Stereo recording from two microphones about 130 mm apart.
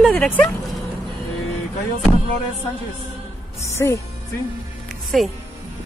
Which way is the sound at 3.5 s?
20° left (ahead or behind).